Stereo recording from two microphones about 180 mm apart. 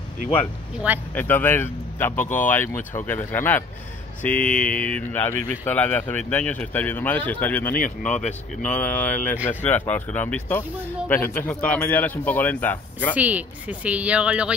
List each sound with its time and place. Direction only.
1.1 s speech: 10° left (ahead or behind)
7.7 s speech: 50° left (ahead or behind)
8.6 s speech: 10° left (ahead or behind)
13.1 s speech: 10° right (ahead or behind)